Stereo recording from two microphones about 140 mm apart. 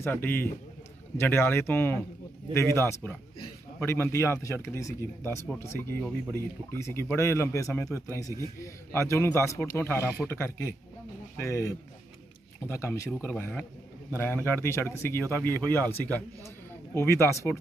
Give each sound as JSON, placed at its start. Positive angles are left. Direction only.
{"t": 0.0, "sound": "speech", "side_deg": 15}
{"t": 16.9, "sound": "speech", "side_deg": 20}